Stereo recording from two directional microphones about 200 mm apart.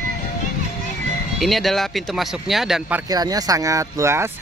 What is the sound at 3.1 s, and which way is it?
Speech, 20° right (ahead or behind).